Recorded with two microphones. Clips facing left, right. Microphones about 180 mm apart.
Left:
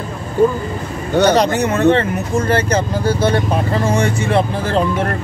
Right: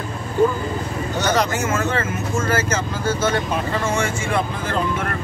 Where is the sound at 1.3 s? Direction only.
35° left (ahead or behind).